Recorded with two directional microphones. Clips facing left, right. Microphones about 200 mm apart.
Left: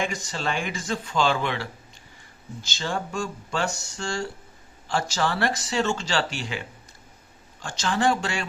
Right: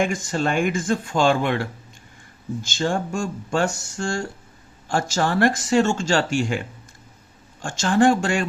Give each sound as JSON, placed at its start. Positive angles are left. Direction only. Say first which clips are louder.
{"t": 0.0, "sound": "speech", "louder": "right 6 dB", "side_deg": -50}
{"t": 7.6, "sound": "speech", "louder": "right 6 dB", "side_deg": -50}